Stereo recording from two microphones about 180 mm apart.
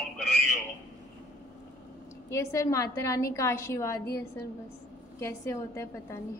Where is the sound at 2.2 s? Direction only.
15° left (ahead or behind).